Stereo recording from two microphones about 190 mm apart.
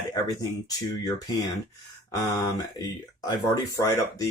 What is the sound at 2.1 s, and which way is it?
Speech, 20° left (ahead or behind).